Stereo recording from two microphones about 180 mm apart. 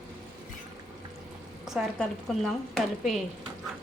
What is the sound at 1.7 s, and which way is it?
A woman's voice, centre (ahead or behind).